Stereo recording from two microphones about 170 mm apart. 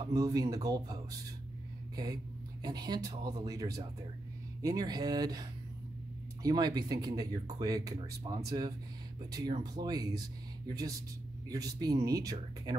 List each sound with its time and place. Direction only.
0.0 s speech: 20° right (ahead or behind)
2.6 s speech: 25° right (ahead or behind)